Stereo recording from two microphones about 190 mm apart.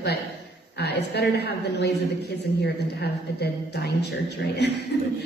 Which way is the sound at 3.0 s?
60° left (ahead or behind).